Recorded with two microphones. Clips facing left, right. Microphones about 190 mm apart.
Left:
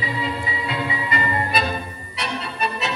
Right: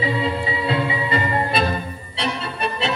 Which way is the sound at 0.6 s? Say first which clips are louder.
Right 4 dB; 30° right (ahead or behind).